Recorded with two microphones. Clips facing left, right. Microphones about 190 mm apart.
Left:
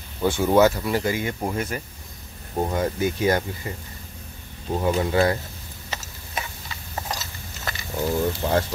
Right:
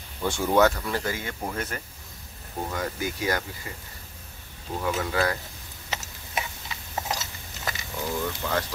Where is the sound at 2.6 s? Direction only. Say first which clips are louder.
Left 6 dB; 25° left (ahead or behind).